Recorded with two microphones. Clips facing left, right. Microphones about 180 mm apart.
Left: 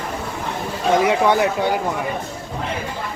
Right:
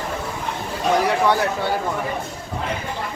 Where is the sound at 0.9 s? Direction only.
20° left (ahead or behind).